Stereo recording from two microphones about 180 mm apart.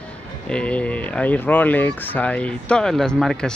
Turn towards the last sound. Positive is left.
turn(degrees=5)  # may be behind; listen again after turning